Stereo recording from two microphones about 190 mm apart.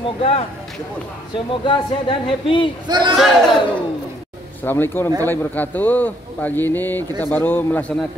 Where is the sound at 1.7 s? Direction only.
25° left (ahead or behind).